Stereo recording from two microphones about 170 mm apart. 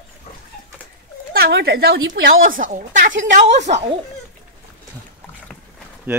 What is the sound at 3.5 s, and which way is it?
Speech, 40° right (ahead or behind).